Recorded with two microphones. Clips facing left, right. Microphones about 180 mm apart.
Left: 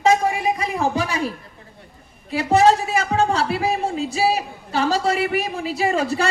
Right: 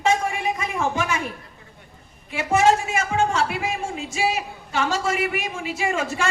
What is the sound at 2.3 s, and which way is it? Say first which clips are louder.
A woman's voice: left 3 dB; 35° left (ahead or behind).